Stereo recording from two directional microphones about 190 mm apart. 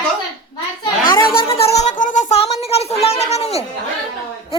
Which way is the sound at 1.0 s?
25° left (ahead or behind).